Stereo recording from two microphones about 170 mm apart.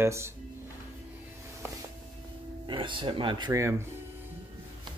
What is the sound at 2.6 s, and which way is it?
Speech, 30° right (ahead or behind).